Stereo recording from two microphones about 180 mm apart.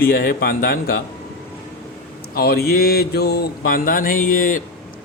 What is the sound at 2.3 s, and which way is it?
Mantra, 60° left (ahead or behind).